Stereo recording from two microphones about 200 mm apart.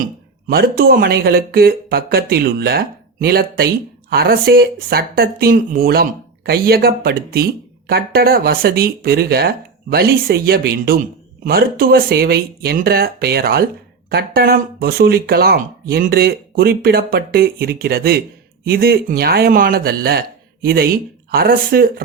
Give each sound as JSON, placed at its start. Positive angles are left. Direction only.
{"t": 0.0, "sound": "speech", "side_deg": -45}